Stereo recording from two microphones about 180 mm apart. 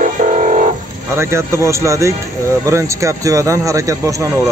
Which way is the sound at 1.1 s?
15° right (ahead or behind).